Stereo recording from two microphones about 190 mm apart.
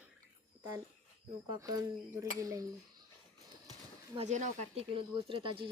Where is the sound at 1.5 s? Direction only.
20° right (ahead or behind).